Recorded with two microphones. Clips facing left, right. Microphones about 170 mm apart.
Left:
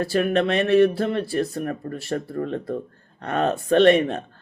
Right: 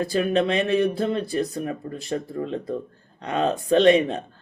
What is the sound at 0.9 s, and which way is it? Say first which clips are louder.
Speech: left 1 dB; 20° right (ahead or behind).